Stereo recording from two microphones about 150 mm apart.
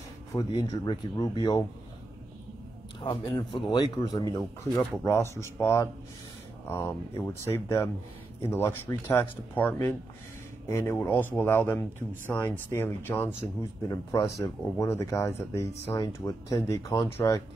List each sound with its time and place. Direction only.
0.4 s speech: 25° left (ahead or behind)
3.0 s speech: 30° left (ahead or behind)